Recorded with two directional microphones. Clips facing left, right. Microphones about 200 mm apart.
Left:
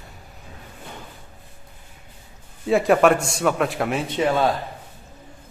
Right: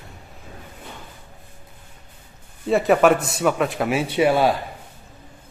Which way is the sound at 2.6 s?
Centre (ahead or behind).